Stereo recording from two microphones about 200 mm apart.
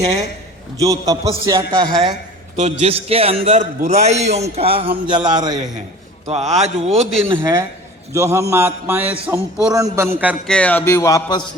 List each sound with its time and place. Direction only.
0.8 s a man's voice: 15° right (ahead or behind)
2.6 s a man's voice: 35° right (ahead or behind)
6.2 s a man's voice: 35° right (ahead or behind); by 9.7 s 5° right (ahead or behind)
9.7 s a man's voice: 15° right (ahead or behind)
10.5 s speech: 5° left (ahead or behind)